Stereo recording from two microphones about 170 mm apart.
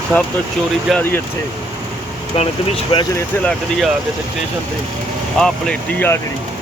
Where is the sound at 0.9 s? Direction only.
10° left (ahead or behind).